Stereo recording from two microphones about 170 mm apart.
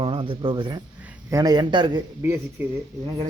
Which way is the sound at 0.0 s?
30° right (ahead or behind).